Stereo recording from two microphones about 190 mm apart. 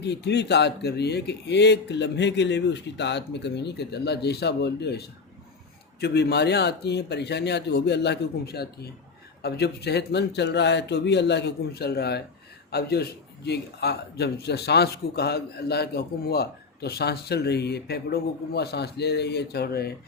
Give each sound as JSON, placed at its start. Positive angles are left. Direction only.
{"t": 0.0, "sound": "a man's voice", "side_deg": 60}